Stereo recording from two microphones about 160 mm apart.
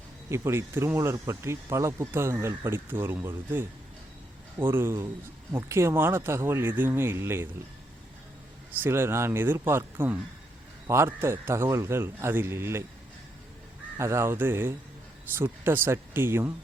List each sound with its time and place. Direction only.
0.3 s speech: 15° right (ahead or behind)
8.8 s speech: 15° right (ahead or behind)
13.9 s speech: 15° right (ahead or behind)